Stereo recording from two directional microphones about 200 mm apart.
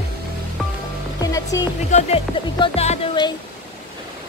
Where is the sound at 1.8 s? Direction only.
35° left (ahead or behind).